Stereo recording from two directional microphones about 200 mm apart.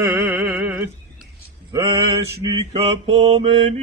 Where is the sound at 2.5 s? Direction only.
30° right (ahead or behind).